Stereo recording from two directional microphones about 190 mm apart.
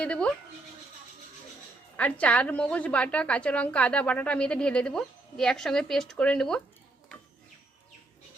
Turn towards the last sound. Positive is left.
turn(degrees=5)  # may be behind; listen again after turning